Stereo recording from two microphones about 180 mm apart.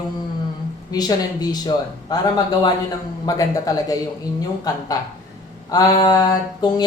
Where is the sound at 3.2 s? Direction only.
20° left (ahead or behind).